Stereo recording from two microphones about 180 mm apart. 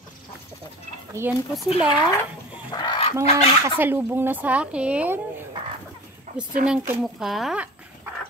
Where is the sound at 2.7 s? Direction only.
25° left (ahead or behind).